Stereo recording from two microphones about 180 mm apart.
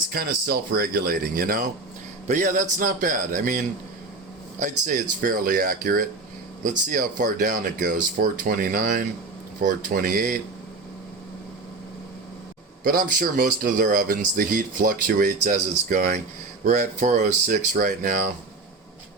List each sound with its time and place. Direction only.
0.1 s speech: 55° right (ahead or behind)
4.6 s speech: 45° right (ahead or behind)
12.8 s speech: 50° right (ahead or behind)